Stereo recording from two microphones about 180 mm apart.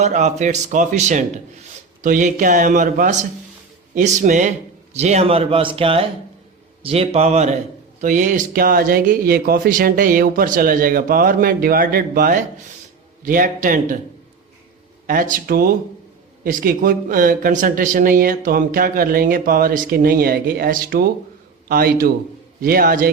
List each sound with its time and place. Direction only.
0.0 s speech: 40° right (ahead or behind)
15.0 s a man's voice: 50° right (ahead or behind)